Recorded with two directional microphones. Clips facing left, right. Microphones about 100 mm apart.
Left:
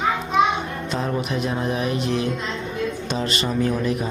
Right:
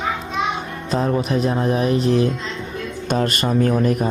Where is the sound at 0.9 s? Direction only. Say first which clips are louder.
Right 6 dB; 35° right (ahead or behind).